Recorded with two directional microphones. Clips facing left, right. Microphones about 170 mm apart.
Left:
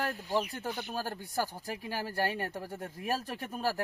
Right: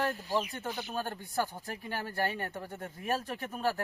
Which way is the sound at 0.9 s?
5° left (ahead or behind).